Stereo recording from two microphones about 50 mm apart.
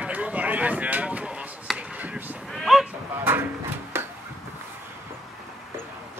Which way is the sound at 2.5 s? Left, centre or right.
Centre.